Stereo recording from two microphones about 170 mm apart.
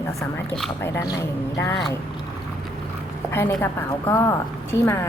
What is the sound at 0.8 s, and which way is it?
Speech, 15° left (ahead or behind).